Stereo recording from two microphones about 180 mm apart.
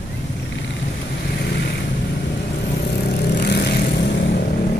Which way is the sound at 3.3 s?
65° left (ahead or behind).